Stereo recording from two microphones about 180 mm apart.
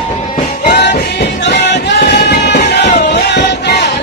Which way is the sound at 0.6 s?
70° left (ahead or behind).